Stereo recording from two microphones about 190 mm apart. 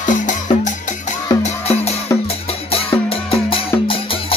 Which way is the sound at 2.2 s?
30° left (ahead or behind).